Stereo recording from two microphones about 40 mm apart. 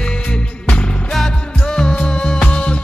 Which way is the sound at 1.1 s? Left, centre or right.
Centre.